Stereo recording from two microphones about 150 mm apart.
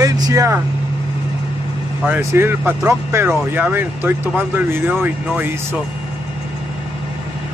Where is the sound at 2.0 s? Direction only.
15° right (ahead or behind).